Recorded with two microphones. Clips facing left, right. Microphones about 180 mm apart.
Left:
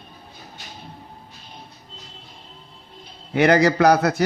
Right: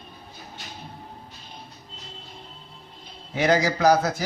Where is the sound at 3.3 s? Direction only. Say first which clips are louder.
Left 5 dB; 65° left (ahead or behind).